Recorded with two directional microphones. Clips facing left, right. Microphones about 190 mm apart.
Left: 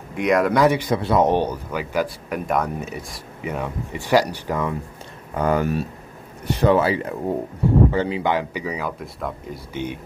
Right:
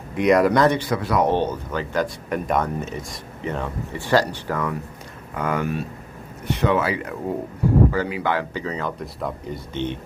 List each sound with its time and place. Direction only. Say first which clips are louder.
0.1 s speech: right 2 dB; centre (ahead or behind)
0.9 s speech: left 2 dB; 25° left (ahead or behind)
5.3 s speech: left 4 dB; 35° left (ahead or behind); by 9.9 s 10° left (ahead or behind)